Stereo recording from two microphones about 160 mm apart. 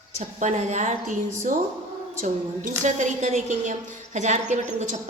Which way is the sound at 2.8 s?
50° right (ahead or behind).